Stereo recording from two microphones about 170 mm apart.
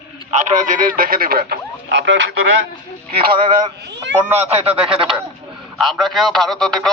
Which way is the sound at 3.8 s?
90° right.